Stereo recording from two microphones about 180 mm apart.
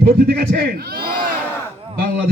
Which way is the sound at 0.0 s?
55° right (ahead or behind).